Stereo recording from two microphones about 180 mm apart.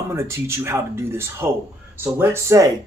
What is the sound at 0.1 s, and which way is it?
A man's voice, 15° right (ahead or behind).